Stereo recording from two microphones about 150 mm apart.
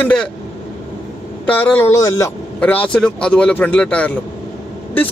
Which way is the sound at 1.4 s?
10° left (ahead or behind).